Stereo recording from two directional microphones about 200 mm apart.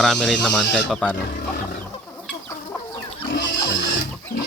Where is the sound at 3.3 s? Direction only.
60° left (ahead or behind).